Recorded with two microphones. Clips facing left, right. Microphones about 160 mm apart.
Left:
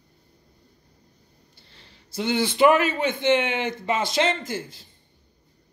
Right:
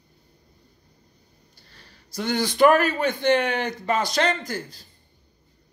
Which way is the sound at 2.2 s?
45° right (ahead or behind).